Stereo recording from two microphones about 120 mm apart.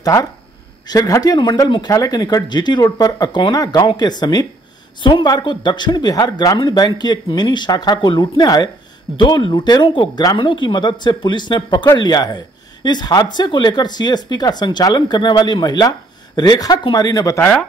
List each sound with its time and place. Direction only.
0.0 s speech: 30° left (ahead or behind)
17.4 s speech: 15° left (ahead or behind)